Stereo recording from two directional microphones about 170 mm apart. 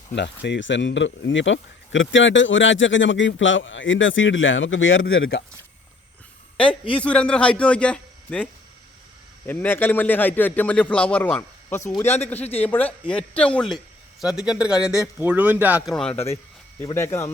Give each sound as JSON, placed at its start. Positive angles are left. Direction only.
{"t": 0.2, "sound": "speech", "side_deg": 90}
{"t": 6.6, "sound": "a man's voice", "side_deg": 30}
{"t": 7.0, "sound": "a man's voice", "side_deg": 5}
{"t": 9.5, "sound": "a man's voice", "side_deg": 10}
{"t": 16.1, "sound": "a man's voice", "side_deg": 40}
{"t": 16.9, "sound": "a man's voice", "side_deg": 15}